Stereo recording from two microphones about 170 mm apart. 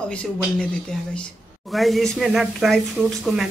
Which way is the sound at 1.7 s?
Centre (ahead or behind).